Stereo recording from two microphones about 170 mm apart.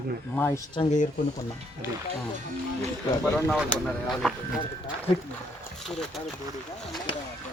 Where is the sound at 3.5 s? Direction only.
Centre (ahead or behind).